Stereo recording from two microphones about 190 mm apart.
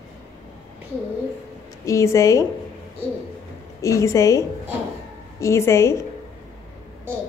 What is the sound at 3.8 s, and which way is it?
Speech, 15° left (ahead or behind).